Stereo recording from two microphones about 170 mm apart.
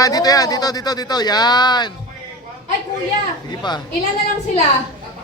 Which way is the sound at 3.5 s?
25° left (ahead or behind).